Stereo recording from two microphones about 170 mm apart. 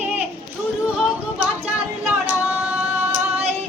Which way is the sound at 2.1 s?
10° right (ahead or behind).